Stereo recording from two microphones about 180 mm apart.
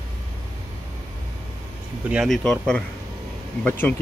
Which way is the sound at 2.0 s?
5° right (ahead or behind).